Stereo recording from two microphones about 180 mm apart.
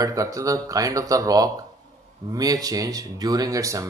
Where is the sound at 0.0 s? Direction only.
20° right (ahead or behind).